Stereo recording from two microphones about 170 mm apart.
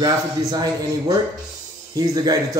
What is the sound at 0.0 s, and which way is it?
A man's voice, 25° right (ahead or behind).